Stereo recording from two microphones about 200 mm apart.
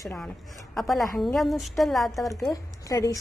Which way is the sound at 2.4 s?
15° left (ahead or behind).